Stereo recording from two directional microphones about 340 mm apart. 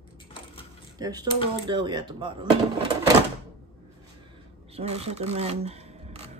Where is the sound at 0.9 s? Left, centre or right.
Centre.